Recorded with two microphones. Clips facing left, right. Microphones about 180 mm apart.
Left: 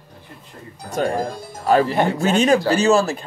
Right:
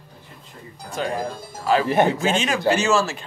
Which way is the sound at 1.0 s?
45° left (ahead or behind).